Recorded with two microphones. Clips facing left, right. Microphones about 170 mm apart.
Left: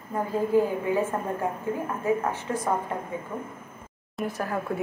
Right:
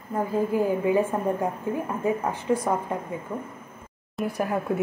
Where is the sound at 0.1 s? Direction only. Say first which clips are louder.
Left 1 dB; 15° right (ahead or behind).